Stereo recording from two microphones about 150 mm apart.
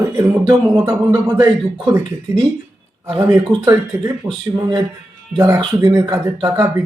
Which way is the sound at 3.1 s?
35° right (ahead or behind).